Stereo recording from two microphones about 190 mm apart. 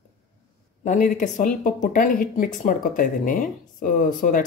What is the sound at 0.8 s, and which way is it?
Speech, 40° left (ahead or behind).